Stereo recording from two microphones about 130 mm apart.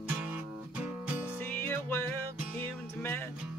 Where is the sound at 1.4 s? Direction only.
15° left (ahead or behind).